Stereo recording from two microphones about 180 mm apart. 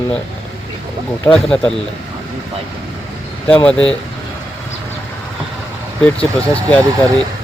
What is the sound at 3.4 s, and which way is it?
Speech, 10° left (ahead or behind).